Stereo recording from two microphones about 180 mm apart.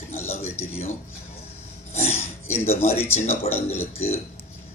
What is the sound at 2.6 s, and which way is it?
Speech, 35° left (ahead or behind).